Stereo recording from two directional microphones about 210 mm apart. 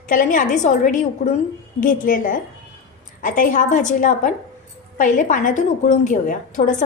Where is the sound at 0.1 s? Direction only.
40° left (ahead or behind).